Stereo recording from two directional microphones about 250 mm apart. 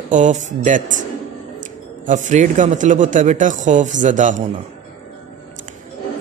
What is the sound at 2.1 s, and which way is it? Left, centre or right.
A man's voice, right.